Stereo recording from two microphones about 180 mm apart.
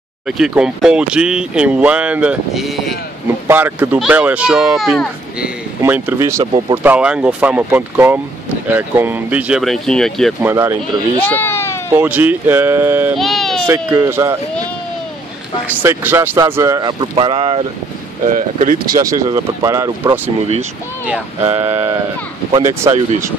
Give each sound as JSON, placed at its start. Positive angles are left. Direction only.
{"t": 0.3, "sound": "speech", "side_deg": -5}
{"t": 3.4, "sound": "speech", "side_deg": -15}
{"t": 10.4, "sound": "speech", "side_deg": -15}
{"t": 11.1, "sound": "baby cry", "side_deg": 10}
{"t": 11.9, "sound": "speech", "side_deg": -10}
{"t": 13.2, "sound": "baby cry", "side_deg": 0}
{"t": 13.8, "sound": "speech", "side_deg": -20}
{"t": 15.6, "sound": "speech", "side_deg": -10}
{"t": 18.3, "sound": "speech", "side_deg": -45}
{"t": 18.9, "sound": "speech", "side_deg": -20}
{"t": 21.5, "sound": "speech", "side_deg": -15}